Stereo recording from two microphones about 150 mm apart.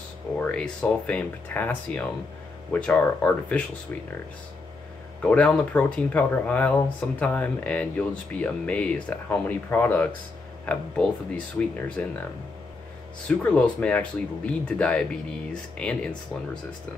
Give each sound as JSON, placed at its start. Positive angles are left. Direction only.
{"t": 0.4, "sound": "speech", "side_deg": 5}
{"t": 5.2, "sound": "speech", "side_deg": 10}
{"t": 13.3, "sound": "speech", "side_deg": 10}